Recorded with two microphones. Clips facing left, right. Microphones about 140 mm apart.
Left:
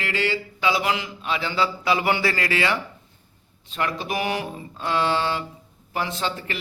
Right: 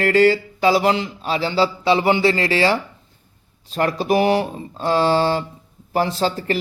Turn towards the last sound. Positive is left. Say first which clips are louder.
# right 8 dB
turn(degrees=-35)  # may be behind; listen again after turning